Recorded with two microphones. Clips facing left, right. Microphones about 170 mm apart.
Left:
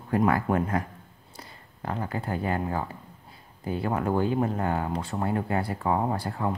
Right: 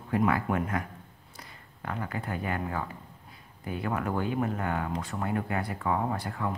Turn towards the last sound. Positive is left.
turn(degrees=30)  # may be behind; listen again after turning